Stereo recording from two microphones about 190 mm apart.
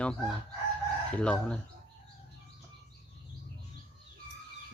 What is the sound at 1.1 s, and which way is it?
Speech, 5° left (ahead or behind).